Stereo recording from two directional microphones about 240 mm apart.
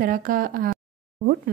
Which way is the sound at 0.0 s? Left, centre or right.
Right.